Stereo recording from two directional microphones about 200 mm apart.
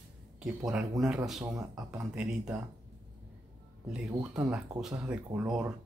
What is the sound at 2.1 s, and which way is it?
Speech, 5° right (ahead or behind).